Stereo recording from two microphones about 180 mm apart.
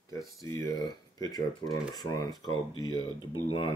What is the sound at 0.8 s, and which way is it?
Speech, 20° left (ahead or behind).